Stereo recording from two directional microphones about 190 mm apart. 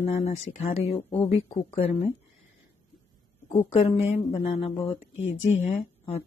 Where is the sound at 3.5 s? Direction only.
30° left (ahead or behind).